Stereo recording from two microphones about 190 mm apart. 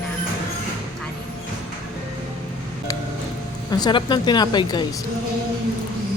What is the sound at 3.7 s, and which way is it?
Speech, 20° left (ahead or behind).